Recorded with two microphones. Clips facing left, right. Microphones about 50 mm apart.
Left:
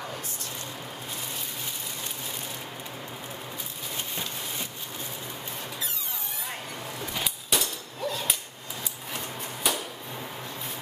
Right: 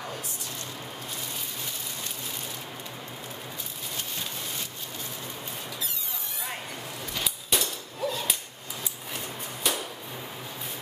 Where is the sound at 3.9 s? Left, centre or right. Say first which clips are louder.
Left 1 dB; centre.